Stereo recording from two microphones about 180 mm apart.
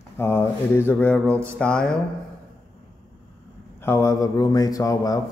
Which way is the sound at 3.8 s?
15° left (ahead or behind).